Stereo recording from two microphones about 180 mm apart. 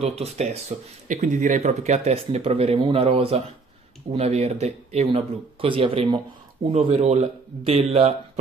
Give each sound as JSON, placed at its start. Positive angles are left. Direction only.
{"t": 0.0, "sound": "speech", "side_deg": -35}